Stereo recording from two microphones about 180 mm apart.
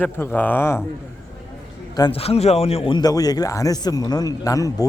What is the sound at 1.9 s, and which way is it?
Speech, 30° left (ahead or behind).